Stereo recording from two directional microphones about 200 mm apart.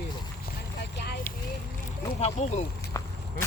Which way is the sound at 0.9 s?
55° left (ahead or behind).